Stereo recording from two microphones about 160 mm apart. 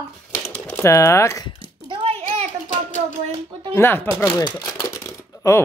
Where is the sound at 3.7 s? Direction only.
15° left (ahead or behind).